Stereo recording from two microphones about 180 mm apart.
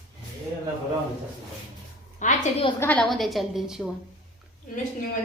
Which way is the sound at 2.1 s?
45° left (ahead or behind).